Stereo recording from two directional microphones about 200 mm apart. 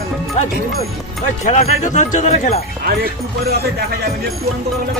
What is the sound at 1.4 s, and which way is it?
Speech, 35° left (ahead or behind).